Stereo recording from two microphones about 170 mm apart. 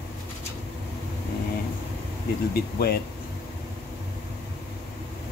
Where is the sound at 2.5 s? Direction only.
65° left (ahead or behind).